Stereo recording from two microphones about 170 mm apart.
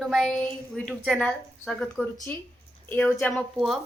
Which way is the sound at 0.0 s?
Centre (ahead or behind).